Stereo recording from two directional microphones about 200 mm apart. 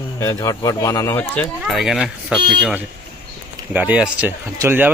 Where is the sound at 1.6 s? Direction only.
Centre (ahead or behind).